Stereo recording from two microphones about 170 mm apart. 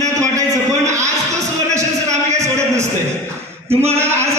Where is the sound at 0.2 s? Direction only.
20° right (ahead or behind).